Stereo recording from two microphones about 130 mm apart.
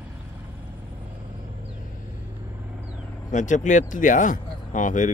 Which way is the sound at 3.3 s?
70° left (ahead or behind).